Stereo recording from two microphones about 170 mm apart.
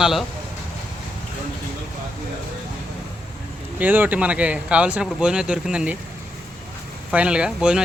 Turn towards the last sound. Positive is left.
turn(degrees=-5)  # may be behind; listen again after turning